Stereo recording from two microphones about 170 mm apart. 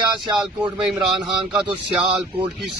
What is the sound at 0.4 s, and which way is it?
Speech, 5° right (ahead or behind).